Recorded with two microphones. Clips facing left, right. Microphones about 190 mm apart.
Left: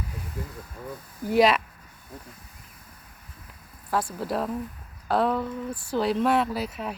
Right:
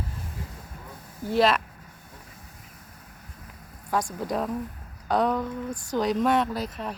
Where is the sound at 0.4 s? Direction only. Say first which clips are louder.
Left 8 dB; 55° left (ahead or behind).